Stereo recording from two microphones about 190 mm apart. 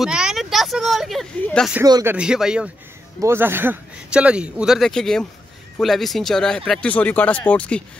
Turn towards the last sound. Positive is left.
turn(degrees=5)  # may be behind; listen again after turning